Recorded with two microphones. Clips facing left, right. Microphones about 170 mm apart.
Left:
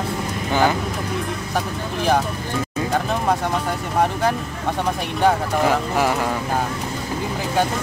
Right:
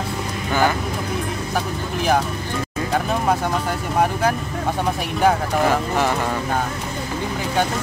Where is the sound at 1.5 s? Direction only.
Centre (ahead or behind).